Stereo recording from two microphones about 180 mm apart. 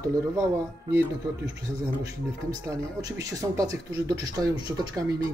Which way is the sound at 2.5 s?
20° right (ahead or behind).